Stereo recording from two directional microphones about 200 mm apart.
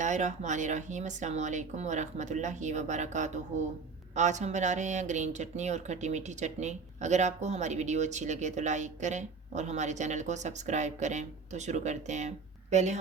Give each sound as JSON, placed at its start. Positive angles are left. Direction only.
{"t": 0.0, "sound": "speech", "side_deg": -35}